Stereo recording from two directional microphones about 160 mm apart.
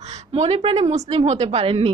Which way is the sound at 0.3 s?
40° right (ahead or behind).